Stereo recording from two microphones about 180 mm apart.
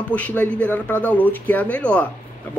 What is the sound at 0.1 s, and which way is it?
Speech, 10° left (ahead or behind).